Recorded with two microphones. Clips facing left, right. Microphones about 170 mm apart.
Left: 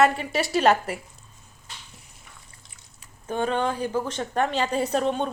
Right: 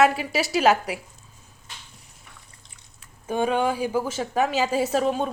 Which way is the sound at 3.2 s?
10° right (ahead or behind).